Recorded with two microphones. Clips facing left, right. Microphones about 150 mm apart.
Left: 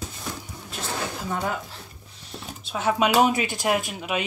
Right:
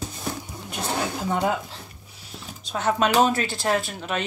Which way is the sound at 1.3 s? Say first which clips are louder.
Right 4 dB; 20° right (ahead or behind).